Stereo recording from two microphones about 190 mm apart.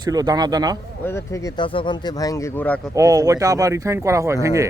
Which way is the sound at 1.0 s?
15° left (ahead or behind).